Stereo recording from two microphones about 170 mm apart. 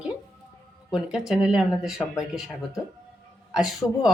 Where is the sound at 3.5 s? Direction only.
Centre (ahead or behind).